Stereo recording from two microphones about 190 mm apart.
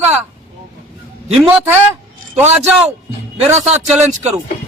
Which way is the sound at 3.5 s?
35° right (ahead or behind).